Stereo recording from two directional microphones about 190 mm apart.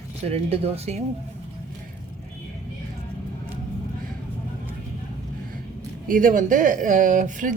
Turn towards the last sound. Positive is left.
turn(degrees=-45)  # may be behind; listen again after turning